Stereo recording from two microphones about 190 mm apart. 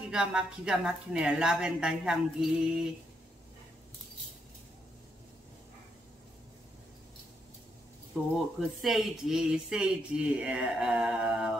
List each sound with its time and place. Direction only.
0.1 s speech: 5° right (ahead or behind)
8.2 s speech: 5° right (ahead or behind)